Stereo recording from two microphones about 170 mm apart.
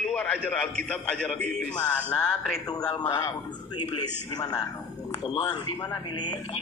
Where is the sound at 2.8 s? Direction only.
25° left (ahead or behind).